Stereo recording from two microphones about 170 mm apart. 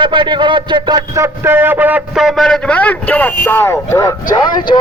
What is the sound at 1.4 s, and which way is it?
A man's voice, 10° right (ahead or behind).